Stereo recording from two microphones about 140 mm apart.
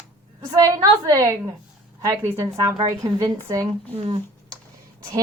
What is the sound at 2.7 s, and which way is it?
Speech, 30° right (ahead or behind).